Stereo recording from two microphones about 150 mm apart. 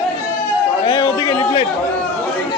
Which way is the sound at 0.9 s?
30° left (ahead or behind).